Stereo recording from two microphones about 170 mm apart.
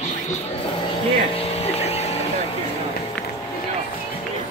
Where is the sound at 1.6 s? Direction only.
35° left (ahead or behind).